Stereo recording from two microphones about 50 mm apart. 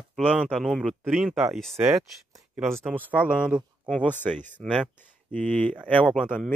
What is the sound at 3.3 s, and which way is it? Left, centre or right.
Speech, centre.